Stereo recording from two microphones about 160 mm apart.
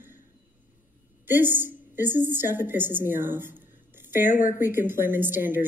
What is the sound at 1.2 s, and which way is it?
A woman's voice, 15° right (ahead or behind).